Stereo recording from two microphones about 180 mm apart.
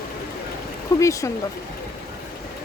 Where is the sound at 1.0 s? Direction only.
15° left (ahead or behind).